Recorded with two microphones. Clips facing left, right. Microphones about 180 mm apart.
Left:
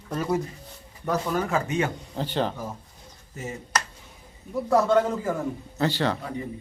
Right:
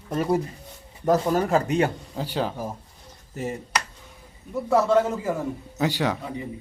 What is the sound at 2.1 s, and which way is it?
Speech, 5° right (ahead or behind).